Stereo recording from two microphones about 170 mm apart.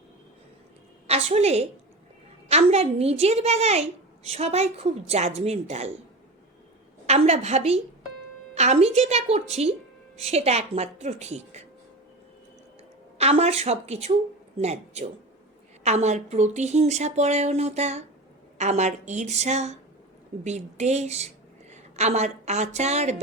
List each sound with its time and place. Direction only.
1.0 s a woman's voice: 40° right (ahead or behind)
7.1 s a woman's voice: 40° right (ahead or behind)
13.1 s a woman's voice: 40° right (ahead or behind)